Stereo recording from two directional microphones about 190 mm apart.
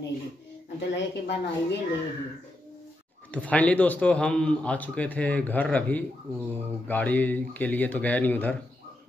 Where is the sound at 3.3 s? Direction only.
5° left (ahead or behind).